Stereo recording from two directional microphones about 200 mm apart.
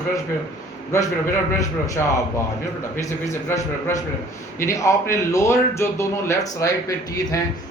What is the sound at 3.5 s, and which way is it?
Speech, 15° left (ahead or behind).